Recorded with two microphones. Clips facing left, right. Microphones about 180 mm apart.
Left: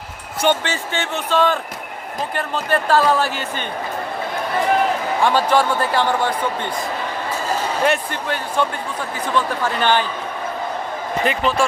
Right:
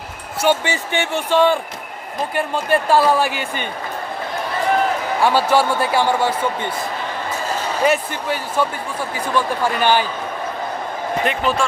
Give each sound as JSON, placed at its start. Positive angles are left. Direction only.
{"t": 0.4, "sound": "speech", "side_deg": -15}
{"t": 5.2, "sound": "speech", "side_deg": -10}
{"t": 7.9, "sound": "speech", "side_deg": -5}
{"t": 11.2, "sound": "speech", "side_deg": 0}